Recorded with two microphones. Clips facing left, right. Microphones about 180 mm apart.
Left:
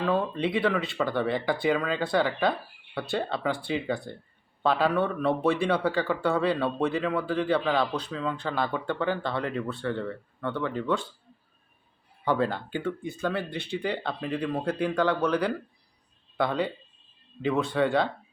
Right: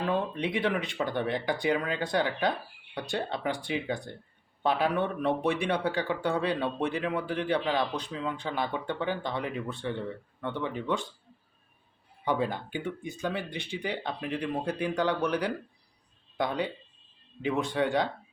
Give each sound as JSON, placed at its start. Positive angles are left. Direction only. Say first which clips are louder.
{"t": 0.0, "sound": "speech", "louder": "left 3 dB", "side_deg": -15}
{"t": 12.2, "sound": "speech", "louder": "left 3 dB", "side_deg": -15}